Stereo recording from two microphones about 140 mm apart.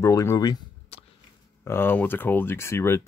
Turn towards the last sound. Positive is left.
turn(degrees=20)  # may be behind; listen again after turning